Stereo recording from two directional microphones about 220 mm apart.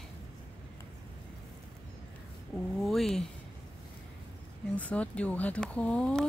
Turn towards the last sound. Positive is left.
turn(degrees=5)  # may be behind; listen again after turning